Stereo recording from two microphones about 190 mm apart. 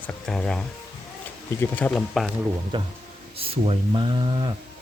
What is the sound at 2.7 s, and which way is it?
Speech, 25° right (ahead or behind).